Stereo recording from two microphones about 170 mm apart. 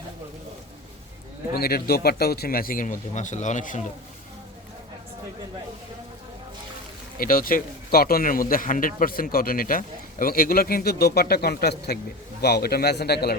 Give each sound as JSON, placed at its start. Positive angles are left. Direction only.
{"t": 1.5, "sound": "speech", "side_deg": 65}
{"t": 7.2, "sound": "a man's voice", "side_deg": 55}